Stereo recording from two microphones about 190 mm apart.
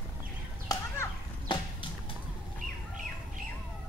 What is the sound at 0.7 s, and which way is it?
Children playing, 20° left (ahead or behind).